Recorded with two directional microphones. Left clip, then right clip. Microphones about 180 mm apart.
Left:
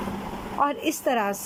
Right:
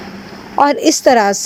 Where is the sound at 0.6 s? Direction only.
40° right (ahead or behind).